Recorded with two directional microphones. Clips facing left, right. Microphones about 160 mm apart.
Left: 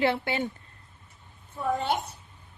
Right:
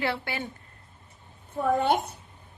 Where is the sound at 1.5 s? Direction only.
55° right (ahead or behind).